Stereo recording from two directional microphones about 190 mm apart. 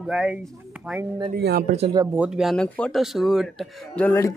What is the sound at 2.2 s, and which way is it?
Speech, centre (ahead or behind).